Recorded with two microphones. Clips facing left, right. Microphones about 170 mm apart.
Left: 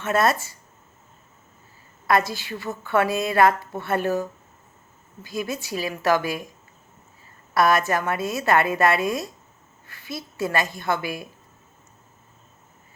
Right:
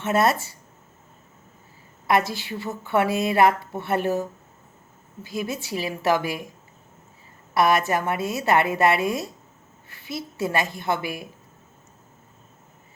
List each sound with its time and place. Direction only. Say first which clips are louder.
0.0 s a woman's voice: even; 20° right (ahead or behind)
2.0 s a woman's voice: even; 20° right (ahead or behind)
5.4 s a woman's voice: even; 25° right (ahead or behind)
7.5 s a woman's voice: even; 20° right (ahead or behind)